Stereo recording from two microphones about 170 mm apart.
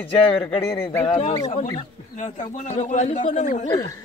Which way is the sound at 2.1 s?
45° left (ahead or behind).